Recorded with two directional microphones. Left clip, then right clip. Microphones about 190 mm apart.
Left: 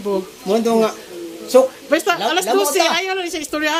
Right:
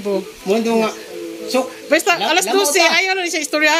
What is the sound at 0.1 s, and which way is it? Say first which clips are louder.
Speech: even; 15° left (ahead or behind).